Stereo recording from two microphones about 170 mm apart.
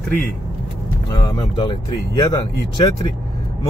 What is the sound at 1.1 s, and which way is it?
Speech, 25° left (ahead or behind).